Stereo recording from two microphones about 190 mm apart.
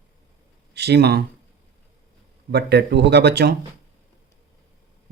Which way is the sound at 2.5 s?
60° right (ahead or behind).